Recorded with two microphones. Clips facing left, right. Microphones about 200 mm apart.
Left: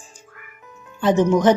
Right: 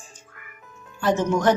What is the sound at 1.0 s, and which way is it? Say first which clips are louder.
Speech: left 5 dB; 20° left (ahead or behind).